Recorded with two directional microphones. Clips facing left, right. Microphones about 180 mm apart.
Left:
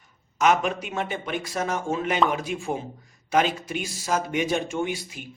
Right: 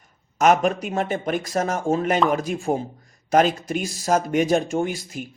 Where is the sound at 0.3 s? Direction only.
45° right (ahead or behind).